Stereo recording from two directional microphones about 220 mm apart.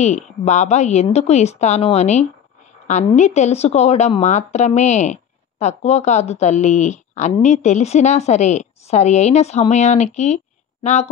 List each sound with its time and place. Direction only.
0.0 s a woman's voice: 30° left (ahead or behind)